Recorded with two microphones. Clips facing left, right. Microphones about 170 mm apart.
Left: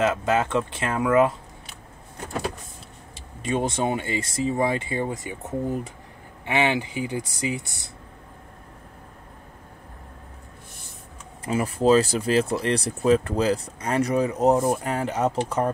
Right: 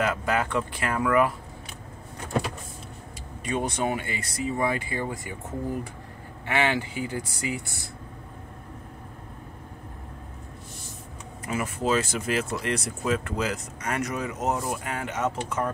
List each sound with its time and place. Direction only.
0.0 s speech: 20° left (ahead or behind)
3.4 s speech: 25° left (ahead or behind)
6.4 s speech: 20° left (ahead or behind)
11.4 s speech: 30° left (ahead or behind)